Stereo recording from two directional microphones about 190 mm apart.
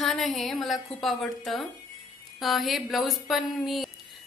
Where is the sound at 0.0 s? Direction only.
Centre (ahead or behind).